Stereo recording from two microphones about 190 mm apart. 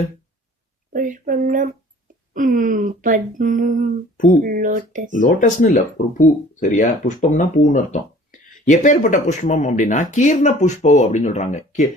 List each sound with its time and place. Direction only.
0.9 s speech: 45° right (ahead or behind)
5.1 s speech: 45° left (ahead or behind)